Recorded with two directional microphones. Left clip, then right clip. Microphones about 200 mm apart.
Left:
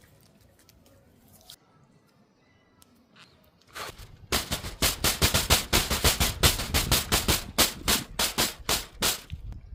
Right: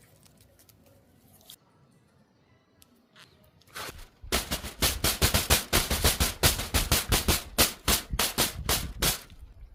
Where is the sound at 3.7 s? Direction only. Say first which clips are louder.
Left 1 dB; centre (ahead or behind).